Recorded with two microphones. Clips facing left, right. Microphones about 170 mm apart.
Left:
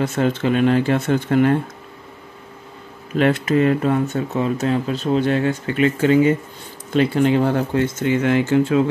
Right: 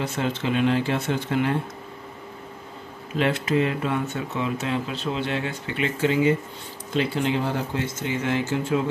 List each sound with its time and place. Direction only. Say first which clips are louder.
0.0 s speech: left 7 dB; 50° left (ahead or behind)
3.2 s speech: left 6 dB; 50° left (ahead or behind); by 8.8 s 65° left (ahead or behind)